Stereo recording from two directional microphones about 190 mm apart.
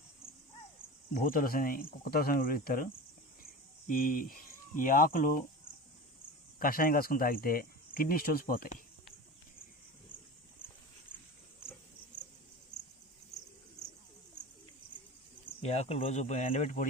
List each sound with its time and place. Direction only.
1.1 s speech: 50° left (ahead or behind)
3.4 s cricket: 45° left (ahead or behind)
4.8 s speech: 45° left (ahead or behind)
6.6 s speech: 50° left (ahead or behind)
15.4 s speech: 35° left (ahead or behind)